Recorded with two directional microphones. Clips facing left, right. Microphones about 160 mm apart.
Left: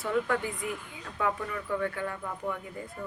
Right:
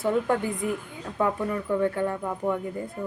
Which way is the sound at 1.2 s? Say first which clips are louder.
Right 6 dB; 40° right (ahead or behind).